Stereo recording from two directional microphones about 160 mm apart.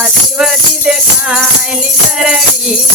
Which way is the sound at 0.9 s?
5° right (ahead or behind).